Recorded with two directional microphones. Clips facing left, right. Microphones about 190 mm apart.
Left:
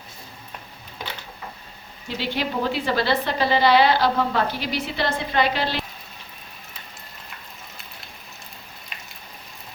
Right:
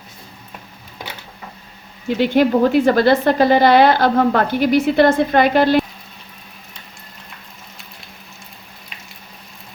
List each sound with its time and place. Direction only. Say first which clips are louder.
2.0 s a woman's voice: right 12 dB; 50° right (ahead or behind)